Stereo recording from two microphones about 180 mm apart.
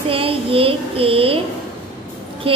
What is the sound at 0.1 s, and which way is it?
Child singing, 30° right (ahead or behind).